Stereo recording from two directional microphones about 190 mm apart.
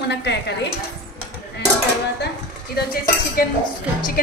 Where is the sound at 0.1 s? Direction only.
65° left (ahead or behind).